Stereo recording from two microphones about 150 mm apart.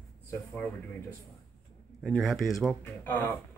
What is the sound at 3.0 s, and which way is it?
Speech, 15° left (ahead or behind).